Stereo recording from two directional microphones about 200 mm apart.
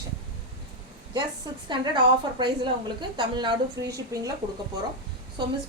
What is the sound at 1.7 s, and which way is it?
A woman's voice, 20° right (ahead or behind).